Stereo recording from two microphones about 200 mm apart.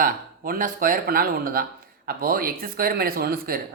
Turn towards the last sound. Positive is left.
turn(degrees=-50)  # may be behind; listen again after turning